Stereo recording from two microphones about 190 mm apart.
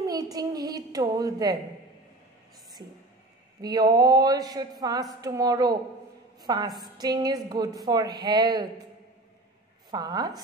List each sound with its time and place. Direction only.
0.0 s a sound: 20° right (ahead or behind)
3.6 s a woman's voice: 20° right (ahead or behind)
9.8 s a woman's voice: 20° right (ahead or behind)